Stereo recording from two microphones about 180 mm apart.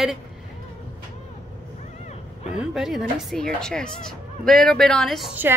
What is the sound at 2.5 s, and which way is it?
A woman's voice, 5° right (ahead or behind).